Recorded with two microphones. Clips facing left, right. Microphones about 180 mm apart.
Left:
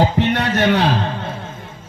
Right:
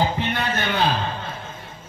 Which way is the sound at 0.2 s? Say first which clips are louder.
Left 8 dB; 75° left (ahead or behind).